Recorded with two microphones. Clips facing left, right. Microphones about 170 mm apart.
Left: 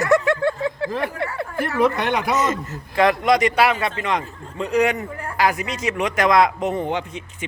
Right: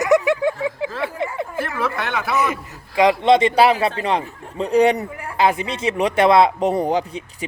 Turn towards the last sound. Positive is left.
turn(degrees=-35)  # may be behind; listen again after turning